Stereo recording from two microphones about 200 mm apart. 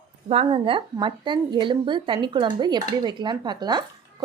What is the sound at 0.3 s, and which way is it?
Speech, 30° right (ahead or behind).